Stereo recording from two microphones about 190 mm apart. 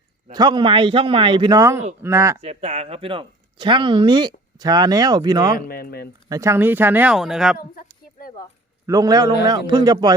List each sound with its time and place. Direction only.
0.3 s speech: 25° right (ahead or behind)
2.4 s speech: 35° right (ahead or behind)
5.6 s speech: 50° left (ahead or behind)
6.2 s speech: 15° right (ahead or behind); by 7.6 s centre (ahead or behind)
8.9 s speech: 20° right (ahead or behind)